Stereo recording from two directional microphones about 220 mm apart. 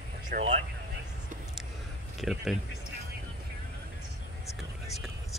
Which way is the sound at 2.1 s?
Centre (ahead or behind).